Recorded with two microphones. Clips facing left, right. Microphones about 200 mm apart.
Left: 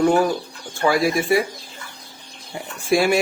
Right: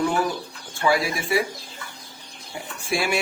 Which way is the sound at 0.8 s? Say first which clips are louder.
Left 3 dB; 40° left (ahead or behind).